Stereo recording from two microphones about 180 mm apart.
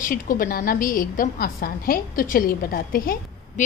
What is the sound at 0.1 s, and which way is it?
A woman's voice, 50° left (ahead or behind).